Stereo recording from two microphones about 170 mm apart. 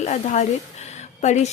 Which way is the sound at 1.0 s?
45° left (ahead or behind).